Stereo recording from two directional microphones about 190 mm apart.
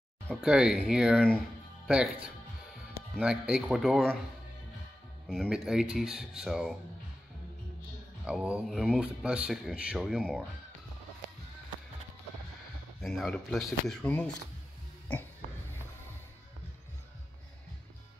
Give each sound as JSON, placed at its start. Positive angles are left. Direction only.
{"t": 0.3, "sound": "speech", "side_deg": -5}
{"t": 3.2, "sound": "speech", "side_deg": -5}
{"t": 5.3, "sound": "speech", "side_deg": 0}
{"t": 8.3, "sound": "speech", "side_deg": -5}
{"t": 13.0, "sound": "speech", "side_deg": 5}